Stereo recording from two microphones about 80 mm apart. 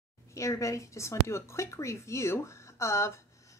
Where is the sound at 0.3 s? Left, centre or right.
Left.